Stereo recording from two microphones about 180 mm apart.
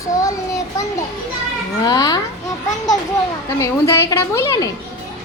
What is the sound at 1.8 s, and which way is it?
Speech, 20° left (ahead or behind).